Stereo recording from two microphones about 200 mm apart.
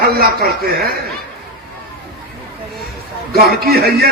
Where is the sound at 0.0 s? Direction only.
50° right (ahead or behind).